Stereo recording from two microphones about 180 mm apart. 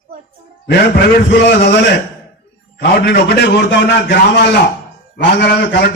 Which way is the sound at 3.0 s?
70° left (ahead or behind).